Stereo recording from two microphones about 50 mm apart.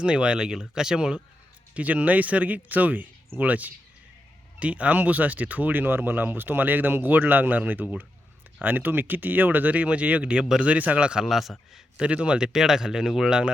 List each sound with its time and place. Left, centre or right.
0.0 s speech: centre
1.7 s speech: right
11.3 s a man's voice: centre
11.9 s speech: right
12.5 s speech: centre